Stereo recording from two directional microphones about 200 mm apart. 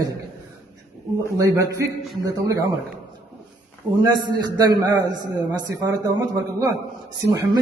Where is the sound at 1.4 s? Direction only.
15° right (ahead or behind).